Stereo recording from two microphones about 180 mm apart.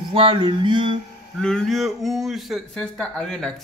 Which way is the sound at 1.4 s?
5° left (ahead or behind).